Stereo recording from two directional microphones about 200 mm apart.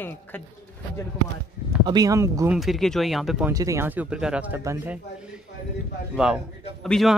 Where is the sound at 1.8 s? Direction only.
20° right (ahead or behind).